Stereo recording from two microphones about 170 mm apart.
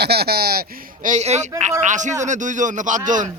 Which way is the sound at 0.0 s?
70° right (ahead or behind).